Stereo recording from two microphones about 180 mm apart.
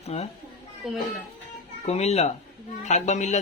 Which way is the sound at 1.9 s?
35° left (ahead or behind).